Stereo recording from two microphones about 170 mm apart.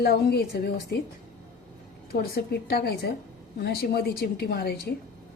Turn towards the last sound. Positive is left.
turn(degrees=65)  # may be behind; listen again after turning